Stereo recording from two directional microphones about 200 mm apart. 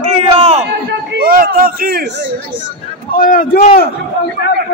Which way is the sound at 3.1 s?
45° left (ahead or behind).